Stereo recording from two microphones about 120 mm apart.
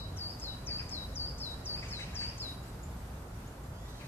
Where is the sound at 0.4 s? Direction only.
15° left (ahead or behind).